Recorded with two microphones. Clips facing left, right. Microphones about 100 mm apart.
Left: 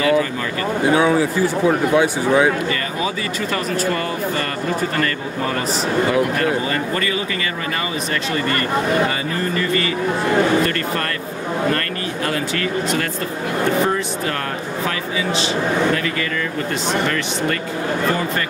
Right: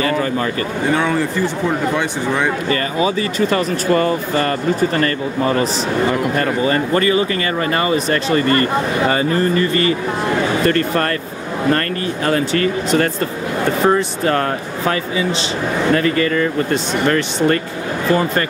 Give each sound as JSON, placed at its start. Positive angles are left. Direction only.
{"t": 0.8, "sound": "speech", "side_deg": 10}
{"t": 3.0, "sound": "speech", "side_deg": -30}
{"t": 6.7, "sound": "speech", "side_deg": -35}
{"t": 12.3, "sound": "speech", "side_deg": -40}
{"t": 15.9, "sound": "speech", "side_deg": -40}